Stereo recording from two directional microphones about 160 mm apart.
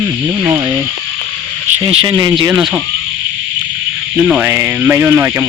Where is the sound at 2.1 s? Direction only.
20° right (ahead or behind).